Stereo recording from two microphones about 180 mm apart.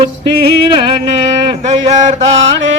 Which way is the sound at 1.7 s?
40° right (ahead or behind).